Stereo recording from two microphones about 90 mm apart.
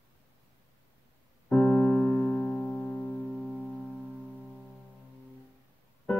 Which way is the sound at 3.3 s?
10° left (ahead or behind).